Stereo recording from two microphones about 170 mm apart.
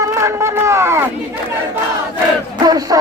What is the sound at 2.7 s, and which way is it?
Music, 20° right (ahead or behind).